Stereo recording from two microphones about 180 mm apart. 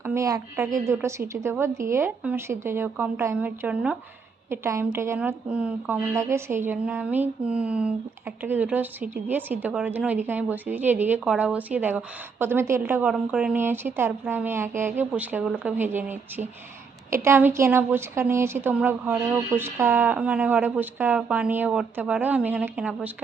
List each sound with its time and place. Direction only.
0.0 s a woman's voice: 15° right (ahead or behind)